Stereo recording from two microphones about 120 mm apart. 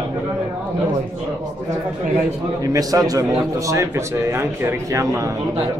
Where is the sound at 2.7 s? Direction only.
30° right (ahead or behind).